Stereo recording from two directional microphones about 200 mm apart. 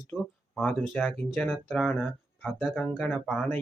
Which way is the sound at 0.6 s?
10° left (ahead or behind).